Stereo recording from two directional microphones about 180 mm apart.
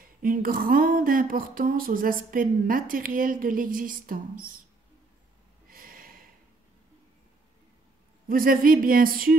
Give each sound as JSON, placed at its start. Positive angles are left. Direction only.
{"t": 0.0, "sound": "speech", "side_deg": -50}
{"t": 5.7, "sound": "snort", "side_deg": -50}
{"t": 8.3, "sound": "speech", "side_deg": -50}